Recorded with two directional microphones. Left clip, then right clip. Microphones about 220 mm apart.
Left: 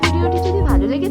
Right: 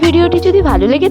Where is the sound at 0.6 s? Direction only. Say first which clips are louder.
Right 8 dB; 35° right (ahead or behind).